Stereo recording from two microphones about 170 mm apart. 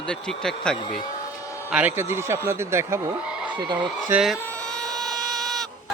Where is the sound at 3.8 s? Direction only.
5° right (ahead or behind).